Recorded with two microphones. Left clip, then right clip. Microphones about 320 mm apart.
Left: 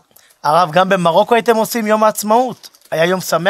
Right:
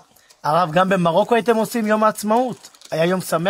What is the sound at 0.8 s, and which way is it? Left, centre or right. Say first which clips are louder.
Speech: left 5 dB; left.